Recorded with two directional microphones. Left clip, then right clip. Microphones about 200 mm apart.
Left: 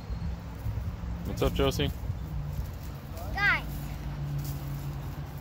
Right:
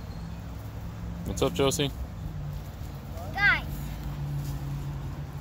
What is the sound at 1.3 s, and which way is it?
Speech, 15° right (ahead or behind).